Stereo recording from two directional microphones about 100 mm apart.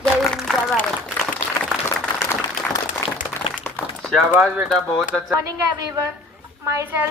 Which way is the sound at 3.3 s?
20° left (ahead or behind).